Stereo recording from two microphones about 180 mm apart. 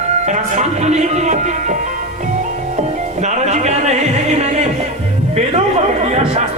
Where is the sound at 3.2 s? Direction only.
40° right (ahead or behind).